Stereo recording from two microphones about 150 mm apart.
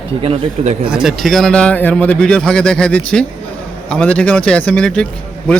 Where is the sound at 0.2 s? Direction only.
45° right (ahead or behind).